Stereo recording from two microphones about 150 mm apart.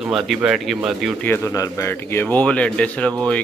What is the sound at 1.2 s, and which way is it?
A man's voice, 15° left (ahead or behind).